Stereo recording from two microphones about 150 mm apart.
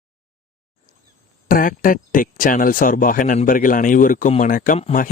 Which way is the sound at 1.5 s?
65° left (ahead or behind).